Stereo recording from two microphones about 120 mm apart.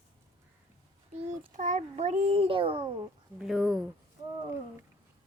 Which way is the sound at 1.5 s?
90° right.